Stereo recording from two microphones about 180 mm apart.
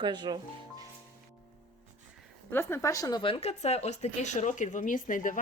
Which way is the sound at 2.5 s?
15° left (ahead or behind).